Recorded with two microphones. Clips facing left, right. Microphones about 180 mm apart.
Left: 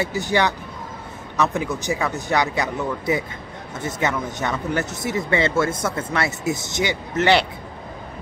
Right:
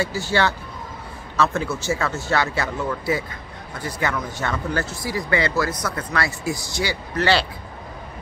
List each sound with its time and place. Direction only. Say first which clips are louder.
0.0 s speech: left 1 dB; 20° left (ahead or behind)